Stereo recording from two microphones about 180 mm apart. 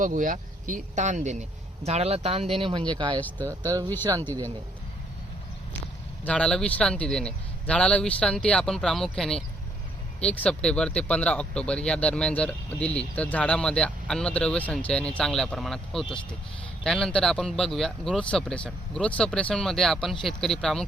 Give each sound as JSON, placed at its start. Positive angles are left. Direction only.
{"t": 0.0, "sound": "speech", "side_deg": -45}
{"t": 3.2, "sound": "speech", "side_deg": 10}
{"t": 4.1, "sound": "speech", "side_deg": -20}
{"t": 6.2, "sound": "speech", "side_deg": 5}